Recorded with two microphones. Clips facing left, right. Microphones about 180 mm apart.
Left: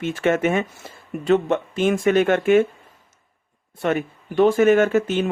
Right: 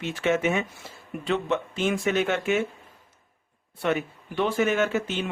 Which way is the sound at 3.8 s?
45° left (ahead or behind).